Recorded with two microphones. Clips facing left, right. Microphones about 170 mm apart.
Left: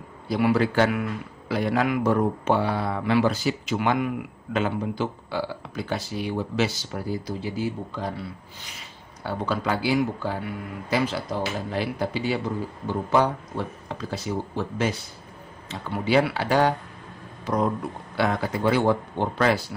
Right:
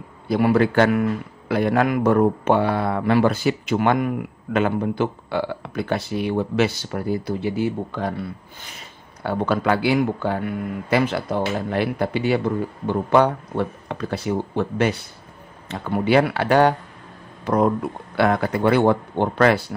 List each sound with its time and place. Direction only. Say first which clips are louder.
0.3 s a man's voice: right 4 dB; 55° right (ahead or behind)
18.1 s speech: right 5 dB; 60° right (ahead or behind)